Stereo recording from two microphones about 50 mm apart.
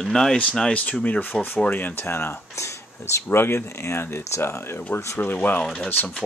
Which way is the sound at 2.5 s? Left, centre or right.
Left.